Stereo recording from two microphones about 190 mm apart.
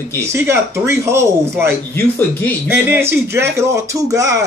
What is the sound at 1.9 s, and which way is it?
Speech, 10° left (ahead or behind).